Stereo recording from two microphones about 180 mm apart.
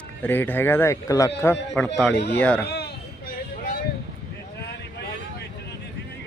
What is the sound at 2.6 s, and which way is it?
Children playing, 65° left (ahead or behind).